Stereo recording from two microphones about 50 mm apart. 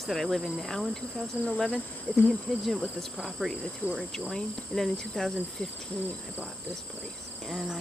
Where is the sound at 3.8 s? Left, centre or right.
Left.